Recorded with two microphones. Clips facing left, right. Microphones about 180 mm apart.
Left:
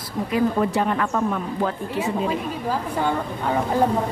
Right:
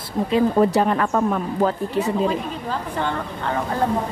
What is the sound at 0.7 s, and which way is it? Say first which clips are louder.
Speech: right 3 dB; 45° right (ahead or behind).